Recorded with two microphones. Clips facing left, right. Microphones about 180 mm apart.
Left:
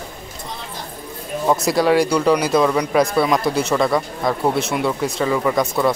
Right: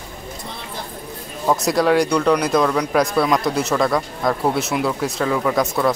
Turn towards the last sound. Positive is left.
turn(degrees=0)  # may be behind; listen again after turning